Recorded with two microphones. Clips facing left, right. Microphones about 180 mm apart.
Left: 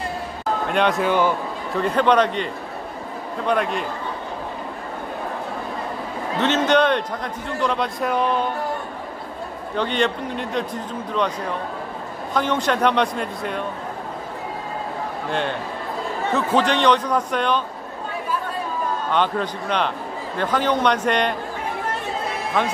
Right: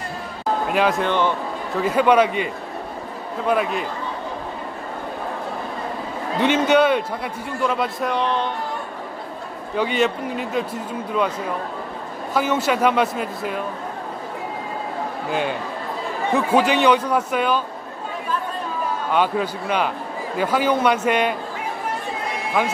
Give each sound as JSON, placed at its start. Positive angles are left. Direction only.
{"t": 0.7, "sound": "a man's voice", "side_deg": -5}
{"t": 1.8, "sound": "a man's voice", "side_deg": -5}
{"t": 6.4, "sound": "a man's voice", "side_deg": -10}
{"t": 8.1, "sound": "speech", "side_deg": 10}
{"t": 9.8, "sound": "a man's voice", "side_deg": -5}
{"t": 12.4, "sound": "a man's voice", "side_deg": -5}
{"t": 15.2, "sound": "a man's voice", "side_deg": -5}
{"t": 19.0, "sound": "a man's voice", "side_deg": -5}
{"t": 22.6, "sound": "a man's voice", "side_deg": -5}